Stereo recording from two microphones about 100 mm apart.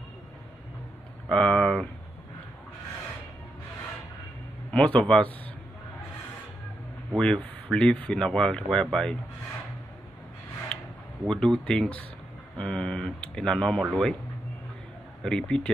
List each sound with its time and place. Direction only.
1.3 s speech: 10° left (ahead or behind)
4.6 s speech: 10° left (ahead or behind)
7.2 s speech: 10° left (ahead or behind)
10.7 s a sound: 5° left (ahead or behind)
11.2 s speech: 5° left (ahead or behind)
15.2 s speech: 10° left (ahead or behind)